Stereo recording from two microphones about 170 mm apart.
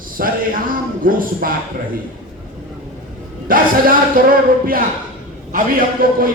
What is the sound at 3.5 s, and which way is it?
A man's voice, 55° right (ahead or behind).